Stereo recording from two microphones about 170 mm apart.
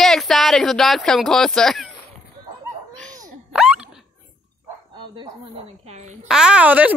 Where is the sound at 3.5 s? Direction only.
5° right (ahead or behind).